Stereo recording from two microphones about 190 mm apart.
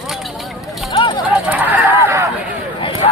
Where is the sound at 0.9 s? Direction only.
25° left (ahead or behind).